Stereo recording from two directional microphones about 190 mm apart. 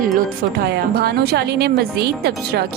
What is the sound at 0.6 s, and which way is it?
Speech, 55° right (ahead or behind).